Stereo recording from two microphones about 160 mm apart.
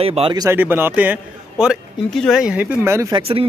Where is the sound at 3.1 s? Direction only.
35° right (ahead or behind).